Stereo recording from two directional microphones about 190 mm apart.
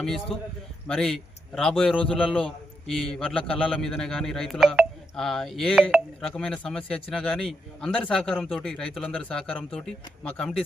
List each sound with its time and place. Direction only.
0.3 s a man's voice: 30° left (ahead or behind)
0.9 s a man's voice: centre (ahead or behind)